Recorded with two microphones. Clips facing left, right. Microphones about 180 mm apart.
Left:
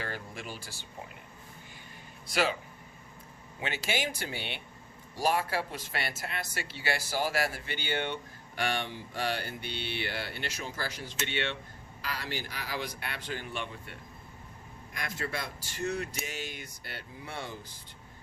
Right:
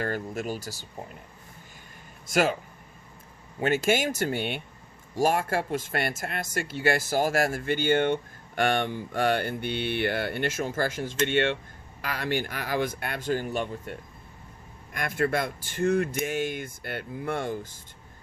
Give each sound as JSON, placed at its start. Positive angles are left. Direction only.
{"t": 0.0, "sound": "speech", "side_deg": -45}
{"t": 2.2, "sound": "speech", "side_deg": -50}
{"t": 3.6, "sound": "speech", "side_deg": -50}
{"t": 14.9, "sound": "speech", "side_deg": -55}